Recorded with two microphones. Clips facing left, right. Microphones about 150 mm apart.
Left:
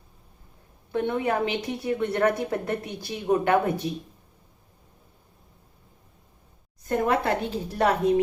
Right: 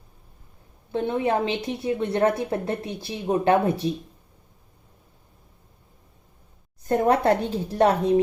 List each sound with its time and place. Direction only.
0.9 s a woman's voice: 25° right (ahead or behind)
6.8 s a woman's voice: 35° right (ahead or behind)